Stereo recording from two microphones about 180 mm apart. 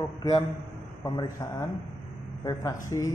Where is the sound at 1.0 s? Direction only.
20° left (ahead or behind).